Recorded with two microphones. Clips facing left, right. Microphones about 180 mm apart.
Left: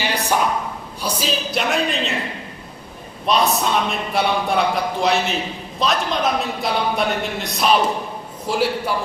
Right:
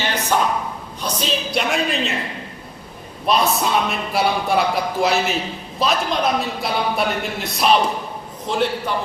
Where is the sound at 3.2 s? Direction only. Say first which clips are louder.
Even; centre (ahead or behind).